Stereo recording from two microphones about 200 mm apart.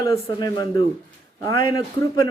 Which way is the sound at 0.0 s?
20° left (ahead or behind).